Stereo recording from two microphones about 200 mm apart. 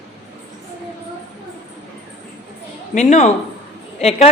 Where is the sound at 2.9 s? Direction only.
35° left (ahead or behind).